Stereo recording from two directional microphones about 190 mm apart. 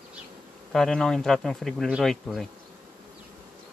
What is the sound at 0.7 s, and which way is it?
Speech, 5° left (ahead or behind).